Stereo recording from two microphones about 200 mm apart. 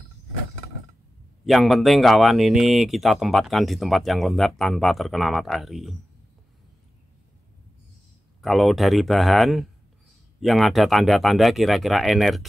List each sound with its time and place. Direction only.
1.4 s speech: centre (ahead or behind)
8.4 s speech: centre (ahead or behind)